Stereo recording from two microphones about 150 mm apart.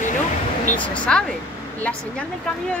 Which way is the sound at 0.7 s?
10° left (ahead or behind).